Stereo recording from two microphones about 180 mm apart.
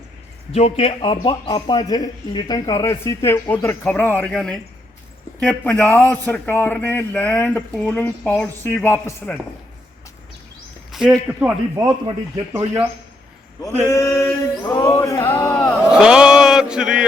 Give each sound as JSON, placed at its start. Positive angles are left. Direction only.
{"t": 0.5, "sound": "a man's voice", "side_deg": 35}
{"t": 10.9, "sound": "a man's voice", "side_deg": -5}
{"t": 14.2, "sound": "a man's voice", "side_deg": 20}
{"t": 15.9, "sound": "chant", "side_deg": -5}